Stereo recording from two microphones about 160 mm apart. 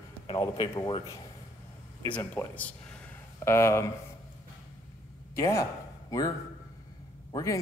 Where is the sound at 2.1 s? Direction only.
15° left (ahead or behind).